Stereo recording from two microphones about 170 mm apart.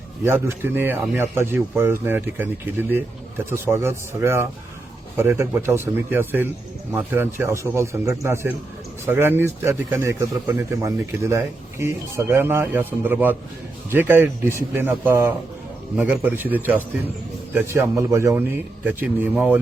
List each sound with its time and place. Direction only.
0.3 s speech: 15° right (ahead or behind)